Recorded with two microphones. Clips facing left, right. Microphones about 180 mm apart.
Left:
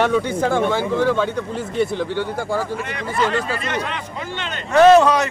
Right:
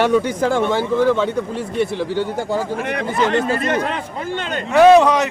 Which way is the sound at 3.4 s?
50° right (ahead or behind).